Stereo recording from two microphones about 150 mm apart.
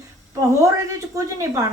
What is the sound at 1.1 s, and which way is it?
Speech, 20° right (ahead or behind).